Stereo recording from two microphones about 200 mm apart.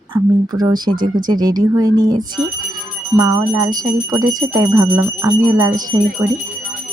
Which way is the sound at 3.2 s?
15° right (ahead or behind).